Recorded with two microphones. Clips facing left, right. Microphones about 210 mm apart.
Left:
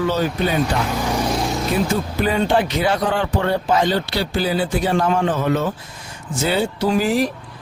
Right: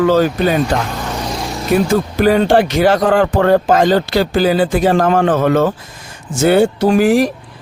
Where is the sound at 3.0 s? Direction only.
45° right (ahead or behind).